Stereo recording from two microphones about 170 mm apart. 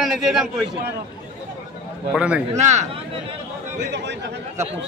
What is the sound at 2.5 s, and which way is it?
Speech, 40° right (ahead or behind).